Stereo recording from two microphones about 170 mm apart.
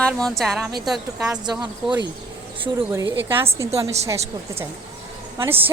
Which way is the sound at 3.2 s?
15° right (ahead or behind).